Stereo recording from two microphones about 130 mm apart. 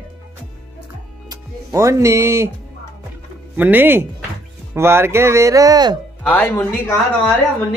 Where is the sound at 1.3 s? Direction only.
25° right (ahead or behind).